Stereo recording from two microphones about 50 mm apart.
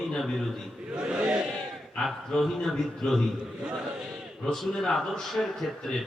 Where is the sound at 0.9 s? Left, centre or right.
Centre.